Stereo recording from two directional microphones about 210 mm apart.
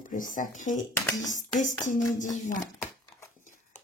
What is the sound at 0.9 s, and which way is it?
Speech, 15° left (ahead or behind).